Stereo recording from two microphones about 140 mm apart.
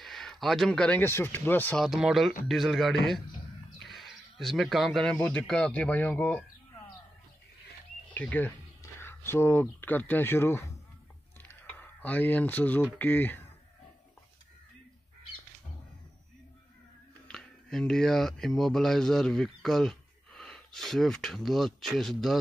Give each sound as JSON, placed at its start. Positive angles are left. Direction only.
{"t": 0.0, "sound": "speech", "side_deg": 0}
{"t": 1.8, "sound": "a man's voice", "side_deg": -5}
{"t": 8.1, "sound": "speech", "side_deg": 10}
{"t": 12.0, "sound": "speech", "side_deg": 10}
{"t": 17.3, "sound": "speech", "side_deg": 5}